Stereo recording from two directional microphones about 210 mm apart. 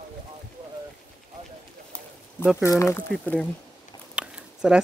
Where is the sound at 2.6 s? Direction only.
15° left (ahead or behind).